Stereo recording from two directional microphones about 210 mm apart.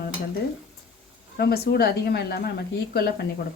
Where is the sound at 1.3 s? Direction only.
50° left (ahead or behind).